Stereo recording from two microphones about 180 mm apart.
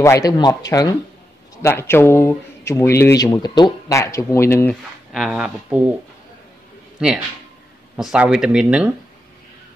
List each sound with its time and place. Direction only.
0.0 s speech: 20° left (ahead or behind)
5.1 s speech: 5° right (ahead or behind)
7.9 s speech: 5° right (ahead or behind)